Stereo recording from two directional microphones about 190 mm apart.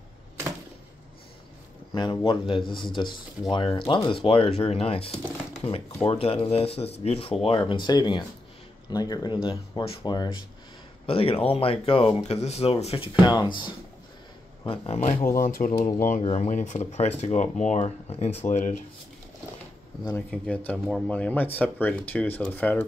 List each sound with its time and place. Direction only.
2.0 s speech: 25° left (ahead or behind)
15.4 s speech: 45° left (ahead or behind)
20.1 s speech: 10° left (ahead or behind)